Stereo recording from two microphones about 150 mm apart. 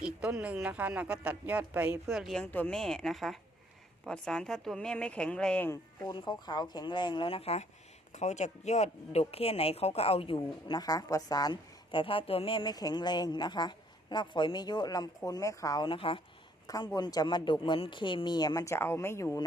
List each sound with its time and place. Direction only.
0.0 s speech: 5° right (ahead or behind); by 5.7 s 10° left (ahead or behind)
6.1 s speech: 30° left (ahead or behind)
16.6 s speech: 25° left (ahead or behind)